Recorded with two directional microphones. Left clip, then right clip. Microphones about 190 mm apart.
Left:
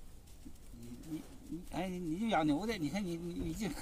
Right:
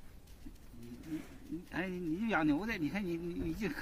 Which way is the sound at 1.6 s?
40° left (ahead or behind).